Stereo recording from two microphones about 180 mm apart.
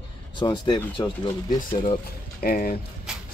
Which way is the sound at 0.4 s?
25° left (ahead or behind).